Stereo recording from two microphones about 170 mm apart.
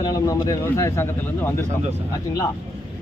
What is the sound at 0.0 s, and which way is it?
Speech, 20° left (ahead or behind).